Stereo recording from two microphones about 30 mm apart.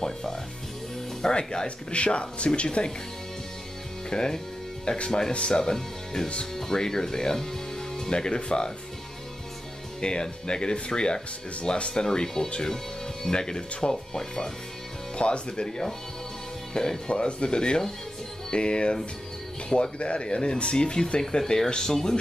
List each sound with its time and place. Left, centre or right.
0.0 s speech: centre
1.9 s speech: left
4.1 s speech: left
8.1 s speech: left
9.9 s speech: left
15.1 s speech: left
16.7 s speech: left
17.1 s speech: left
20.0 s speech: left
21.4 s speech: centre